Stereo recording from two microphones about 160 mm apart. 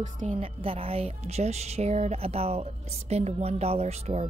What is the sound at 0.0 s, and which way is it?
Speech, 50° right (ahead or behind).